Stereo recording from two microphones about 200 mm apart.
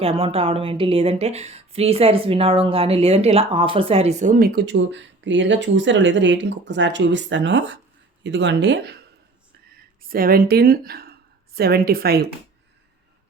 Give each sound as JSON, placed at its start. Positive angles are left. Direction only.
{"t": 0.0, "sound": "speech", "side_deg": -30}
{"t": 9.7, "sound": "a woman's voice", "side_deg": -45}